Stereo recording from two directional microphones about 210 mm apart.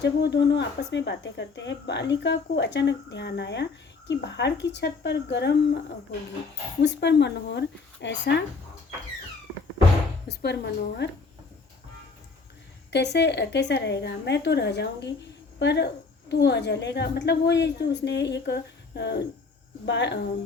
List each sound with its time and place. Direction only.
0.0 s a woman's voice: 55° left (ahead or behind)
6.8 s a woman's voice: 55° left (ahead or behind)
10.2 s a woman's voice: 50° left (ahead or behind)
12.9 s a woman's voice: 55° left (ahead or behind)